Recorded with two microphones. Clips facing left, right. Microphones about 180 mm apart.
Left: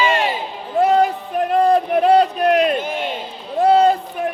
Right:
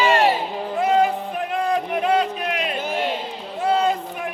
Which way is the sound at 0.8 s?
40° left (ahead or behind).